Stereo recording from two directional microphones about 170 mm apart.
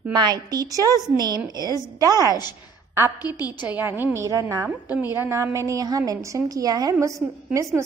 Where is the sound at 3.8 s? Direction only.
10° right (ahead or behind).